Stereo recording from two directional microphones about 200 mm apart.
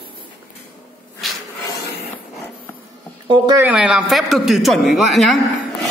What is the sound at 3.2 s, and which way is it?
Speech, 20° right (ahead or behind).